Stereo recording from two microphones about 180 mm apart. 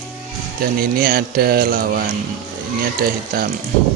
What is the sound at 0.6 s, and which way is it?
Speech, 55° right (ahead or behind).